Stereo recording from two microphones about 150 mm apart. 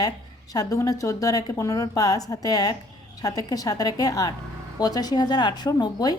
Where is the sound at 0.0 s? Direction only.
25° left (ahead or behind).